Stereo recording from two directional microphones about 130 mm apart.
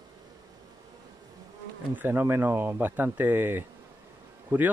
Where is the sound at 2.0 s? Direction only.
15° right (ahead or behind).